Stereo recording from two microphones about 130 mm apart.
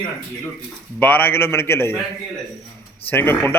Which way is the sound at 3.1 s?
15° left (ahead or behind).